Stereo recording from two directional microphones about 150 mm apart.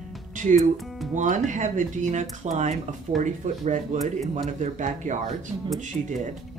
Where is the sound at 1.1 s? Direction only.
55° right (ahead or behind).